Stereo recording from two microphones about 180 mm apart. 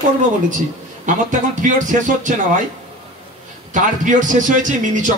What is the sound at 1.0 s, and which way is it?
A man's voice, 45° right (ahead or behind).